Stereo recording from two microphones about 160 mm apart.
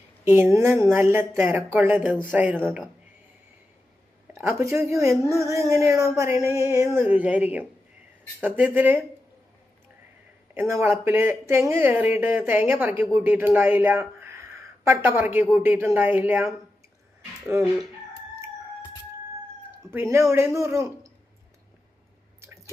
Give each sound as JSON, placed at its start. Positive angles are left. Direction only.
{"t": 0.3, "sound": "speech", "side_deg": -15}
{"t": 4.3, "sound": "speech", "side_deg": -15}
{"t": 5.4, "sound": "music", "side_deg": -20}
{"t": 7.0, "sound": "speech", "side_deg": -10}
{"t": 10.5, "sound": "speech", "side_deg": -15}
{"t": 14.2, "sound": "a sound", "side_deg": -15}
{"t": 15.5, "sound": "speech", "side_deg": -15}
{"t": 19.9, "sound": "speech", "side_deg": -15}
{"t": 22.4, "sound": "drip", "side_deg": -20}